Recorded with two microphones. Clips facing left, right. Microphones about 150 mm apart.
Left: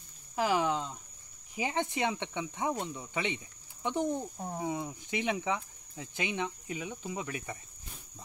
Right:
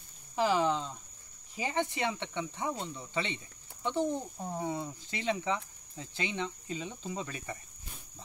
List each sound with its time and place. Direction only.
0.4 s speech: 10° left (ahead or behind)